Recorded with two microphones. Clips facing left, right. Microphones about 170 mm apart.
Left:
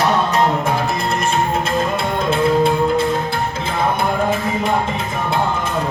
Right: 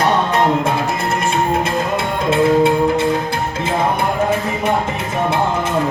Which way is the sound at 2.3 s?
20° right (ahead or behind).